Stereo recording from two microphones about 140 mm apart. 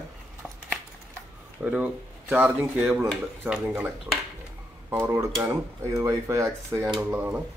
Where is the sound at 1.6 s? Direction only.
10° right (ahead or behind).